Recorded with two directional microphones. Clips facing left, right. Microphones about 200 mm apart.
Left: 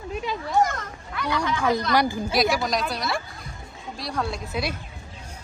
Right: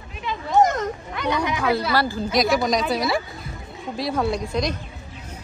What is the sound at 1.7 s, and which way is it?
Speech, 10° right (ahead or behind).